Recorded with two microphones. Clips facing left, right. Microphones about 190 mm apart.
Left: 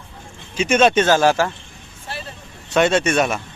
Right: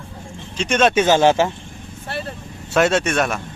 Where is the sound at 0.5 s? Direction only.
5° left (ahead or behind).